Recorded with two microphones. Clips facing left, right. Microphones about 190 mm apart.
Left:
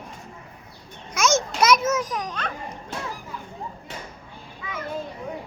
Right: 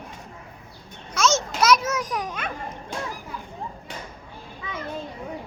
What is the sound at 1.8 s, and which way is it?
Children playing, 10° right (ahead or behind).